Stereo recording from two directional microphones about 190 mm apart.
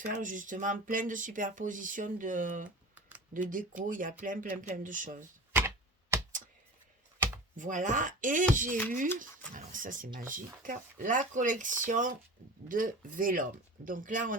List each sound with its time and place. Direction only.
0.0 s speech: 45° right (ahead or behind)
5.5 s tick-tock: 10° right (ahead or behind)
7.5 s speech: 40° right (ahead or behind)